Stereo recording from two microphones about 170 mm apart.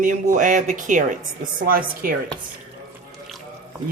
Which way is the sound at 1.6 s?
60° right (ahead or behind).